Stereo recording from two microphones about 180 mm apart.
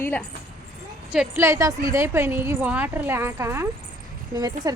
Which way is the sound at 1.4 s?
15° right (ahead or behind).